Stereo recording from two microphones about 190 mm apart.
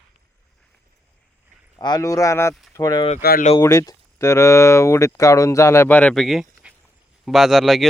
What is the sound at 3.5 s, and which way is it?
Speech, 15° left (ahead or behind).